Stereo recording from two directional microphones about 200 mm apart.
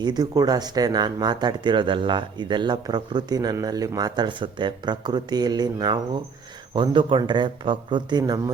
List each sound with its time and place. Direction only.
0.0 s speech: 20° right (ahead or behind)